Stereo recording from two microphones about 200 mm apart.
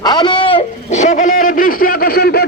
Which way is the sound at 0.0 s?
20° left (ahead or behind).